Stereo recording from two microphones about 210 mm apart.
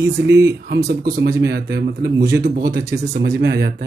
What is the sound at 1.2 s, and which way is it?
Speech, 55° right (ahead or behind).